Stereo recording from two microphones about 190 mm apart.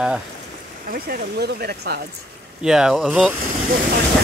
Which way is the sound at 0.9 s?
55° right (ahead or behind).